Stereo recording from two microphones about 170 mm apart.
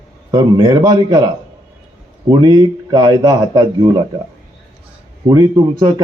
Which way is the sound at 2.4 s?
25° right (ahead or behind).